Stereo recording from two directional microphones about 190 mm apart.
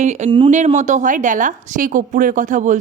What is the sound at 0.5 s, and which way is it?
A woman's voice, 40° right (ahead or behind).